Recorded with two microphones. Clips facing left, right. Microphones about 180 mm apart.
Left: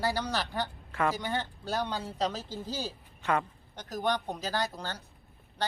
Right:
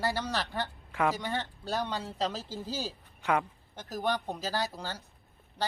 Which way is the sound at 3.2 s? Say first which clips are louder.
Right 1 dB; 10° right (ahead or behind).